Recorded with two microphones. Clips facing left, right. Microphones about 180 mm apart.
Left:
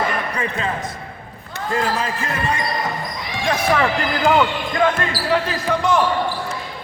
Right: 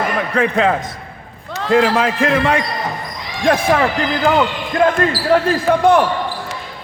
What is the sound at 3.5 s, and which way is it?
Speech, 60° right (ahead or behind).